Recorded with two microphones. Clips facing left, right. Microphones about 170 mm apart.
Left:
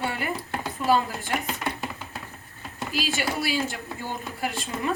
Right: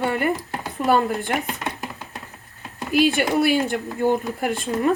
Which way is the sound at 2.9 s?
55° right (ahead or behind).